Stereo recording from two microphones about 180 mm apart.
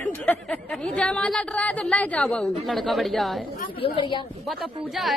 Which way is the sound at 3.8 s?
25° left (ahead or behind).